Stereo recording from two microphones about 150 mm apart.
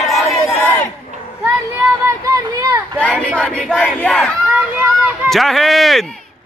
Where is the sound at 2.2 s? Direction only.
20° right (ahead or behind).